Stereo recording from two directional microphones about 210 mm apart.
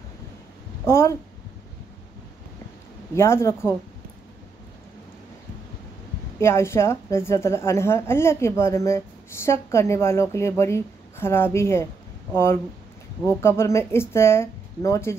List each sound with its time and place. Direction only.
0.8 s a woman's voice: 10° left (ahead or behind)
3.2 s a woman's voice: 10° left (ahead or behind)
6.4 s a woman's voice: 10° left (ahead or behind)